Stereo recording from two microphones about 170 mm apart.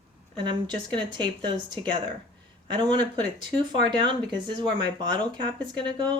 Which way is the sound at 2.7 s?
25° right (ahead or behind).